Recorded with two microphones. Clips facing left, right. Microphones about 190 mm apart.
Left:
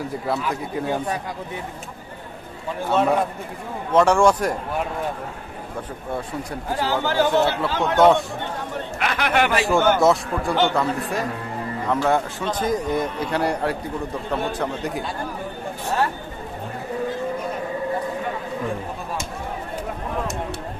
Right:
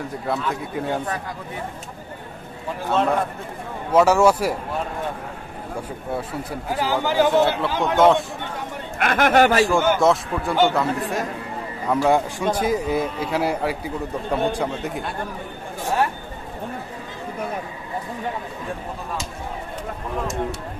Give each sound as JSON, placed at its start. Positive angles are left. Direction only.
{"t": 0.3, "sound": "a man's voice", "side_deg": 0}
{"t": 2.9, "sound": "a man's voice", "side_deg": 5}
{"t": 6.5, "sound": "speech", "side_deg": -10}
{"t": 8.0, "sound": "a man's voice", "side_deg": 0}
{"t": 8.9, "sound": "speech", "side_deg": -50}
{"t": 9.9, "sound": "a man's voice", "side_deg": 0}
{"t": 11.9, "sound": "a man's voice", "side_deg": -10}